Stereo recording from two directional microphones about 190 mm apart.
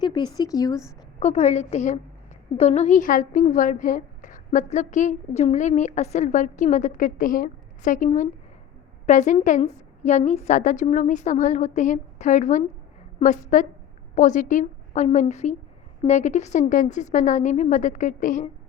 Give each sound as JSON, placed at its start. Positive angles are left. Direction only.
{"t": 0.0, "sound": "speech", "side_deg": 20}
{"t": 1.2, "sound": "a woman's voice", "side_deg": 35}